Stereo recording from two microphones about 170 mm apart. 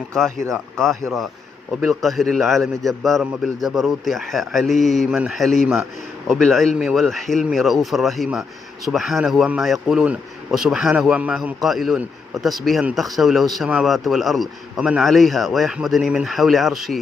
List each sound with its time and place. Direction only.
0.1 s speech: centre (ahead or behind)
2.0 s speech: centre (ahead or behind)